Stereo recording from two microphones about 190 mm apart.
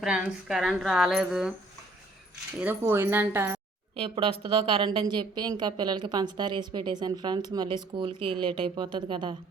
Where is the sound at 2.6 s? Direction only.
10° right (ahead or behind).